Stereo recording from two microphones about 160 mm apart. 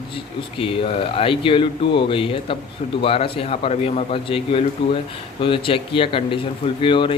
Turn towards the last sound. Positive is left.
turn(degrees=30)  # may be behind; listen again after turning